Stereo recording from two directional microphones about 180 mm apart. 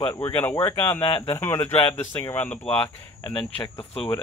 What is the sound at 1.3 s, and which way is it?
Speech, 10° left (ahead or behind).